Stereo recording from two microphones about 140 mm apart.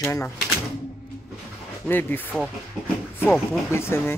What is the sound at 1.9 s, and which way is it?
Speech, 15° left (ahead or behind).